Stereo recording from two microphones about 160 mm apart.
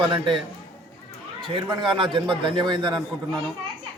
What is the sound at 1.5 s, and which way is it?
A man's voice, 30° right (ahead or behind).